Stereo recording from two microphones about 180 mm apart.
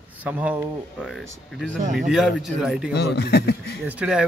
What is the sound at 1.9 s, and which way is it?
Speech, 5° right (ahead or behind).